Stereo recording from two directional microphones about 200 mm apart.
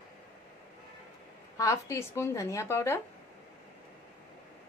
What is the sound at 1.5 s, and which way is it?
Speech, 15° left (ahead or behind).